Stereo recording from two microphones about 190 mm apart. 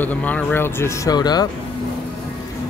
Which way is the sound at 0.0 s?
10° left (ahead or behind).